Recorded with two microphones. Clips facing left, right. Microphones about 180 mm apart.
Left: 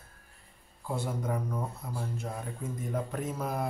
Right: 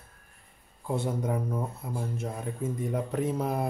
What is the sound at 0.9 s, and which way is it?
Speech, 25° right (ahead or behind).